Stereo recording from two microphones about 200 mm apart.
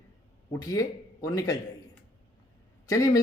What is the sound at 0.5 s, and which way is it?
Speech, 15° left (ahead or behind).